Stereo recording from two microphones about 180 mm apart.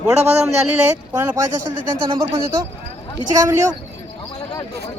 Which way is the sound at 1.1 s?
15° right (ahead or behind).